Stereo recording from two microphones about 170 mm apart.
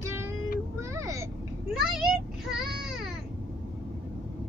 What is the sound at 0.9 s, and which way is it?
Vehicle, 20° right (ahead or behind).